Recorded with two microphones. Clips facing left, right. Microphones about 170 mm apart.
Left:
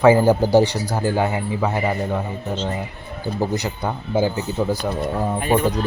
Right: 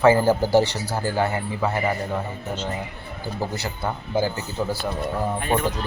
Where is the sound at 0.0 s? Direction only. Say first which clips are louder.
Left 3 dB; 15° left (ahead or behind).